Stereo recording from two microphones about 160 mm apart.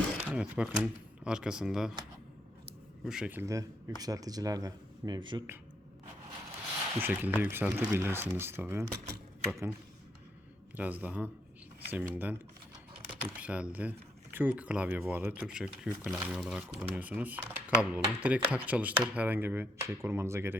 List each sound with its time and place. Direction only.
0.2 s speech: 5° right (ahead or behind)
3.0 s speech: 5° right (ahead or behind); by 5.4 s 25° right (ahead or behind)
7.0 s speech: 10° right (ahead or behind)
10.8 s speech: 10° right (ahead or behind)